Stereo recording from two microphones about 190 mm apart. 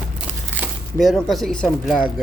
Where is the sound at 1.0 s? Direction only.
Centre (ahead or behind).